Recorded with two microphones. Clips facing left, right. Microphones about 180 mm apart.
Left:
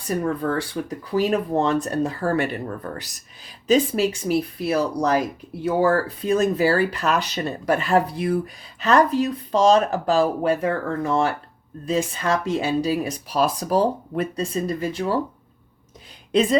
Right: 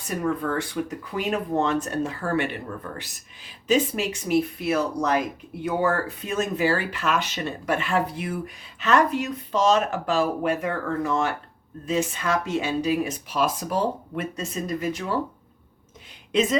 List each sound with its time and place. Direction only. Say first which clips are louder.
0.2 s speech: even; 35° left (ahead or behind)
16.3 s a woman's voice: left 3 dB; 35° left (ahead or behind)